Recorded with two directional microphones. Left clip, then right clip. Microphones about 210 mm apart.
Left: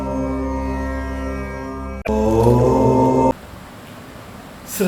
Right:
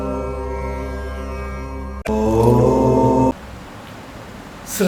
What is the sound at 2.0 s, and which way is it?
Music, centre (ahead or behind).